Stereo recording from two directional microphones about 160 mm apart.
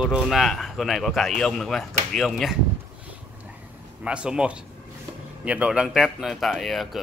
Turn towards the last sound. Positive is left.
turn(degrees=0)  # may be behind; listen again after turning